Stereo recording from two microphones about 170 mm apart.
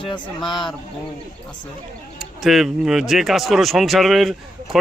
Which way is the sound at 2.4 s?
Centre (ahead or behind).